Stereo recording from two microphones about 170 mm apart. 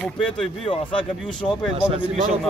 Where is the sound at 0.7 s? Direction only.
30° left (ahead or behind).